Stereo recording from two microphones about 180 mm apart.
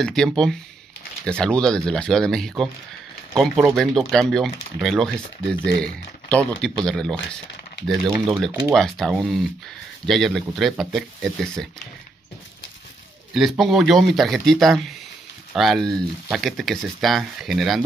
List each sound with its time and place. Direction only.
0.0 s speech: centre (ahead or behind)
5.6 s speech: 55° right (ahead or behind)
6.3 s speech: 5° left (ahead or behind)
8.7 s speech: centre (ahead or behind)
13.3 s speech: centre (ahead or behind)